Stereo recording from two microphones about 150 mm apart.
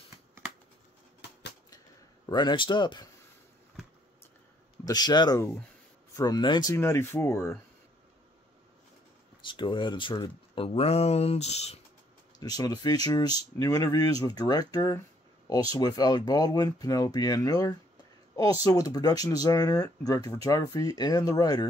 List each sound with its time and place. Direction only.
2.2 s speech: 30° left (ahead or behind)
4.8 s speech: 25° left (ahead or behind)
6.7 s speech: 20° left (ahead or behind)
9.5 s speech: 30° left (ahead or behind)
12.4 s speech: 25° left (ahead or behind)